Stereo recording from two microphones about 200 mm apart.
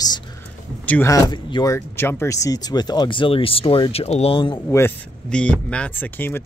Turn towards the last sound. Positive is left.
turn(degrees=10)  # may be behind; listen again after turning